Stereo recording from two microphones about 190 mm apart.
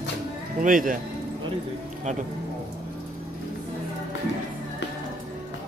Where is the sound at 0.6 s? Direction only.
45° right (ahead or behind).